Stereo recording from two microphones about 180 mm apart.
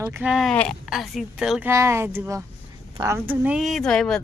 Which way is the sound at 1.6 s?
15° right (ahead or behind).